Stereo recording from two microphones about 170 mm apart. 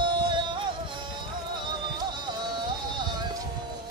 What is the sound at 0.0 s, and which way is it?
Music, 30° right (ahead or behind).